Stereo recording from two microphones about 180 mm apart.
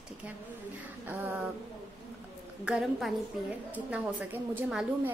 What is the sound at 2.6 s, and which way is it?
Speech, 5° right (ahead or behind).